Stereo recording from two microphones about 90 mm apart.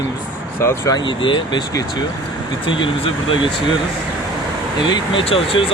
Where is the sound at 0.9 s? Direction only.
65° left (ahead or behind).